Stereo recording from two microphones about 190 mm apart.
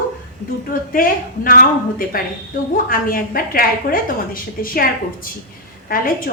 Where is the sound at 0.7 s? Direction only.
50° left (ahead or behind).